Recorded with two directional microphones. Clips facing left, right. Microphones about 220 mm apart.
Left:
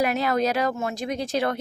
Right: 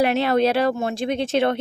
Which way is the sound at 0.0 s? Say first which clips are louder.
Right 4 dB; 30° right (ahead or behind).